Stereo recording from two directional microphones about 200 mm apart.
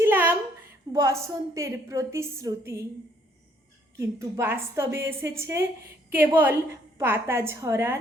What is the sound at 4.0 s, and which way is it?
A woman's voice, 15° right (ahead or behind).